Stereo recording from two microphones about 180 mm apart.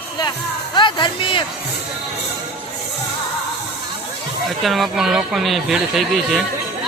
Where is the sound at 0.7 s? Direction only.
25° left (ahead or behind).